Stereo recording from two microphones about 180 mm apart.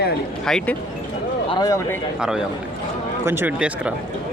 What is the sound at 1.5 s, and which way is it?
Speech, 20° left (ahead or behind).